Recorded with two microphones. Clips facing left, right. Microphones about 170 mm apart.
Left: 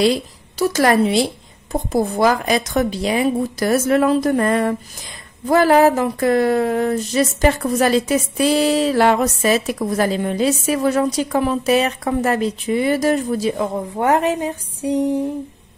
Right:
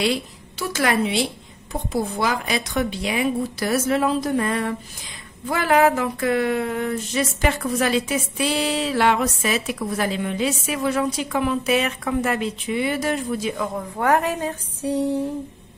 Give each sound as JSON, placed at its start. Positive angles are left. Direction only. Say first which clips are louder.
{"t": 0.0, "sound": "a woman's voice", "louder": "left 6 dB", "side_deg": 40}
{"t": 5.5, "sound": "a sound", "louder": "left 5 dB", "side_deg": 40}
{"t": 13.9, "sound": "speech", "louder": "left 3 dB", "side_deg": 20}